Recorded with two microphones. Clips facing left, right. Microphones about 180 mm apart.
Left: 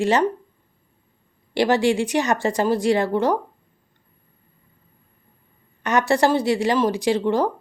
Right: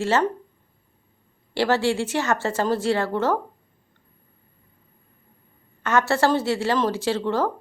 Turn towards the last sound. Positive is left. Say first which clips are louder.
# left 3 dB
turn(degrees=15)  # may be behind; listen again after turning